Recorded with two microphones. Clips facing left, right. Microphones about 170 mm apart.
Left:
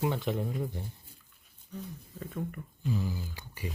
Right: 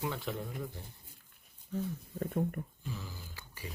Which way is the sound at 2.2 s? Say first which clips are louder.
Right 4 dB; 50° right (ahead or behind).